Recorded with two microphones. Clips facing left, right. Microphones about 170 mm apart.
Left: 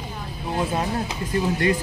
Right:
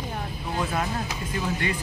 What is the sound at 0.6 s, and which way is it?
Speech, 25° left (ahead or behind).